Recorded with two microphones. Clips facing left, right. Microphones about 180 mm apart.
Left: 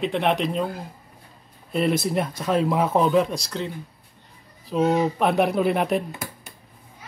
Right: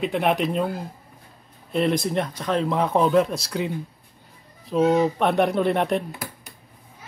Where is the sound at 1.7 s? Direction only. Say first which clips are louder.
Even; 5° left (ahead or behind).